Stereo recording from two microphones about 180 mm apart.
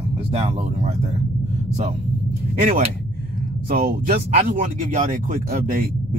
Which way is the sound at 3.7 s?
55° right (ahead or behind).